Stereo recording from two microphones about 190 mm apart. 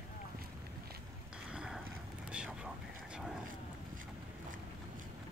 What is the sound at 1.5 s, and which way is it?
Clip-clop, 5° right (ahead or behind).